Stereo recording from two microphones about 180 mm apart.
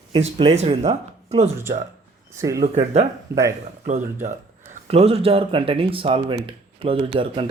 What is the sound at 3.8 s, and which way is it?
Speech, 40° right (ahead or behind).